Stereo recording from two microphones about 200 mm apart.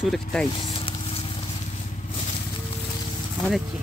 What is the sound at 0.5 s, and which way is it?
Vehicle, 25° left (ahead or behind).